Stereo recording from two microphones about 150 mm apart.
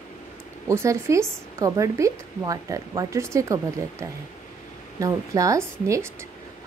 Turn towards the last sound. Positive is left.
turn(degrees=-20)  # may be behind; listen again after turning